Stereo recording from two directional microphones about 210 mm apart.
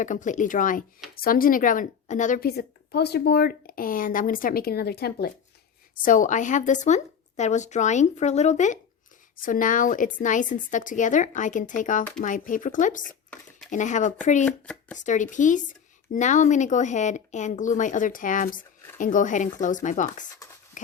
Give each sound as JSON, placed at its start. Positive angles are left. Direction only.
{"t": 0.0, "sound": "a woman's voice", "side_deg": 35}
{"t": 6.0, "sound": "speech", "side_deg": 40}
{"t": 13.1, "sound": "dishes", "side_deg": 5}
{"t": 13.7, "sound": "speech", "side_deg": 35}
{"t": 14.4, "sound": "speech", "side_deg": 5}
{"t": 14.9, "sound": "speech", "side_deg": 35}
{"t": 20.8, "sound": "walk", "side_deg": 35}